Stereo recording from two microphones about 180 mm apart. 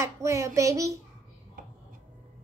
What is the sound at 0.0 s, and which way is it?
A child's voice, 15° right (ahead or behind).